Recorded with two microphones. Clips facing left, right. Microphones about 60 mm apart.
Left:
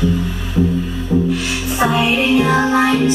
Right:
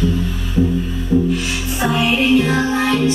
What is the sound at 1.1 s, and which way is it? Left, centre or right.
Music, centre.